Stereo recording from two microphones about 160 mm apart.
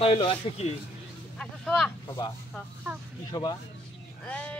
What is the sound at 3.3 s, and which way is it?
Speech, 25° left (ahead or behind).